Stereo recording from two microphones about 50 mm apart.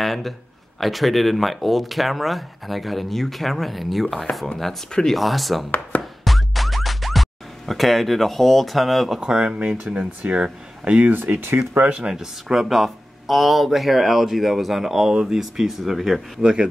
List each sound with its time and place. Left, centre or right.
0.0 s a sound: centre
0.7 s speech: centre
5.7 s speech: left
6.2 s music: centre
9.2 s speech: centre
11.1 s speech: right
11.9 s speech: centre
16.3 s speech: centre